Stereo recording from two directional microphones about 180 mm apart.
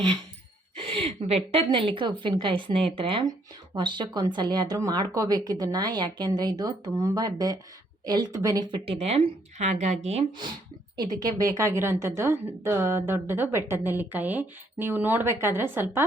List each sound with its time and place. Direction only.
0.8 s a woman's voice: 30° right (ahead or behind); by 16.0 s 10° right (ahead or behind)